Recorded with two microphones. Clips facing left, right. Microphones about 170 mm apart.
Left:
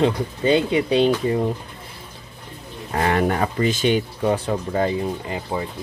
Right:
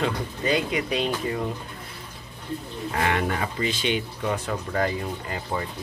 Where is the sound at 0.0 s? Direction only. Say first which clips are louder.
Left 7 dB; 30° left (ahead or behind).